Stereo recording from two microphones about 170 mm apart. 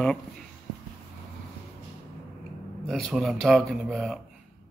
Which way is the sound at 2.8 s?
Centre (ahead or behind).